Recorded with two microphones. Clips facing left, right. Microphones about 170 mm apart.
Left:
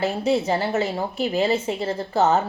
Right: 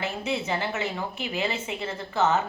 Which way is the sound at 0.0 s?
40° left (ahead or behind).